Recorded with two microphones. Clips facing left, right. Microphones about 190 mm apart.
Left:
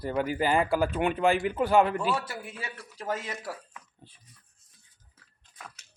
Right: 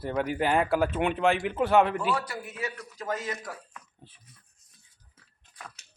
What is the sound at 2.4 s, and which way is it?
A man's voice, 30° left (ahead or behind).